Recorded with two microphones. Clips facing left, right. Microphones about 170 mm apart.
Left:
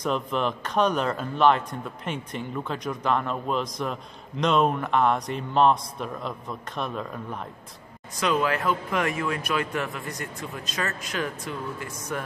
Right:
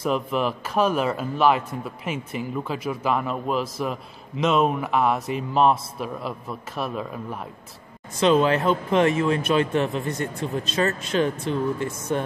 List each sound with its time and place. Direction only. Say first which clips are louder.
0.0 s speech: right 2 dB; 5° right (ahead or behind)
8.2 s speech: right 6 dB; 25° right (ahead or behind)